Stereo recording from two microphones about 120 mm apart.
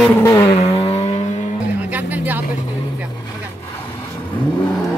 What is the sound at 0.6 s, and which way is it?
Vehicle, 60° left (ahead or behind).